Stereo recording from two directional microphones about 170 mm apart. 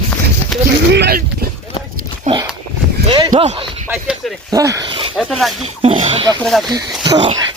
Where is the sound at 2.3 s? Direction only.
45° right (ahead or behind).